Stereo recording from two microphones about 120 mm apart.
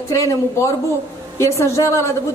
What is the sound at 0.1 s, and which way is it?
A man's voice, 25° left (ahead or behind).